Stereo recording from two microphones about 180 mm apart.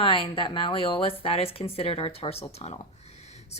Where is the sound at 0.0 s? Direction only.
30° left (ahead or behind).